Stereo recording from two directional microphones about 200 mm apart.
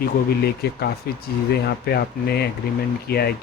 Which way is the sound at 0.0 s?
50° left (ahead or behind).